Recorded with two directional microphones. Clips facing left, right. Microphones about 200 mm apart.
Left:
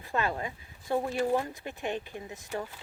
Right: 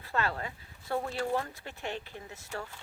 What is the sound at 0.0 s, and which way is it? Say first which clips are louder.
Speech: left 2 dB; 15° left (ahead or behind).